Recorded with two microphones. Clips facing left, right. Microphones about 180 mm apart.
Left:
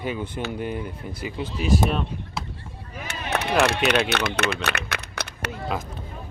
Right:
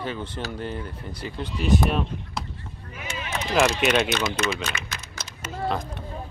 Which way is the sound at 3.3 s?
65° left (ahead or behind).